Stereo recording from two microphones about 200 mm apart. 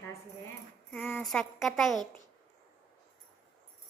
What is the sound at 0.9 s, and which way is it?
Speech, 5° left (ahead or behind).